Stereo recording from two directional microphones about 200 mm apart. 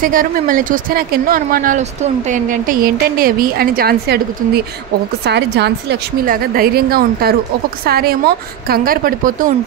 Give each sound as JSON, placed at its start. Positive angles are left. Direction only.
{"t": 0.0, "sound": "speech", "side_deg": -45}